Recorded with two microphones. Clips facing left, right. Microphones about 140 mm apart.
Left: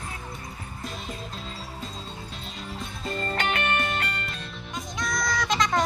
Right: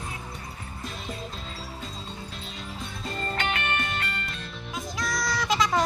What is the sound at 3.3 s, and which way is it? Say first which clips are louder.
Music: left 3 dB; 45° left (ahead or behind).